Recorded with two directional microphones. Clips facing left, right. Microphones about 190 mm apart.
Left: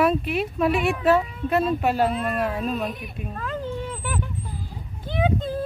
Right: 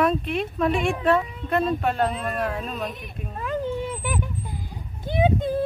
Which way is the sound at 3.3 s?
15° right (ahead or behind).